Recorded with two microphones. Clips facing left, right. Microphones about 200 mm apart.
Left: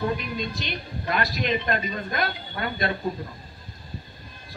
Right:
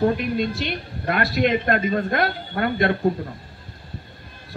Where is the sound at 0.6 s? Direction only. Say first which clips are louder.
Right 5 dB; 60° right (ahead or behind).